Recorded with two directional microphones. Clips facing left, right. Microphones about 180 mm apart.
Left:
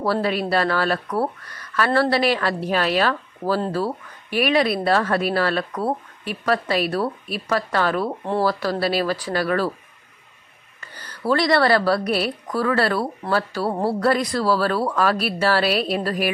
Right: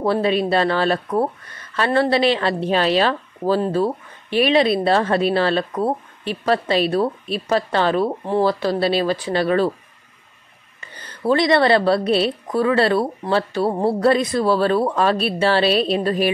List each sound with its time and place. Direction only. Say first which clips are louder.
0.0 s a woman's voice: right 3 dB; 20° right (ahead or behind)
10.8 s a woman's voice: right 3 dB; 20° right (ahead or behind)